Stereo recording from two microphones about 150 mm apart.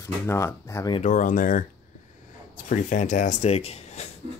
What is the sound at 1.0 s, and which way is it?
Speech, 55° left (ahead or behind).